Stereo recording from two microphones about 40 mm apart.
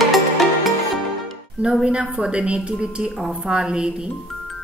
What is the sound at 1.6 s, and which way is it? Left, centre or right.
Music, right.